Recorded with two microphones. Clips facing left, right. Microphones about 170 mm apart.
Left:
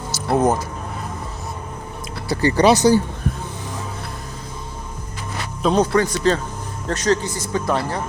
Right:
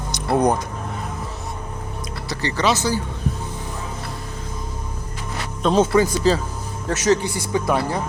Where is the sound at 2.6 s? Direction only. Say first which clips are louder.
Left 7 dB; 15° left (ahead or behind).